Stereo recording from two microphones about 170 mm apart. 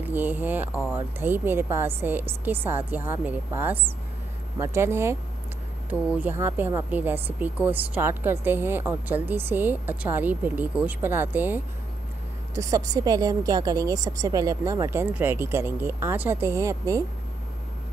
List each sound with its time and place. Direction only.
0.0 s a woman's voice: 10° right (ahead or behind)